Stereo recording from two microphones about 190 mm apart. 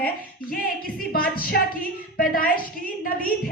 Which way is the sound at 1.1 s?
50° left (ahead or behind).